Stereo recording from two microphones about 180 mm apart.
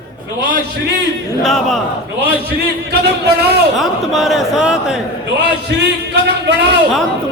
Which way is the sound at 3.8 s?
Centre (ahead or behind).